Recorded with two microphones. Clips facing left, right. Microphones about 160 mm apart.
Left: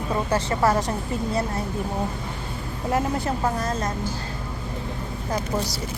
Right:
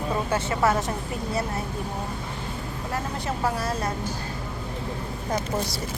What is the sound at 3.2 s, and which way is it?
Speech, 10° right (ahead or behind).